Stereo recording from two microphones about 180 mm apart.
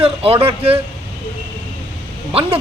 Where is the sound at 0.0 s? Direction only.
35° right (ahead or behind).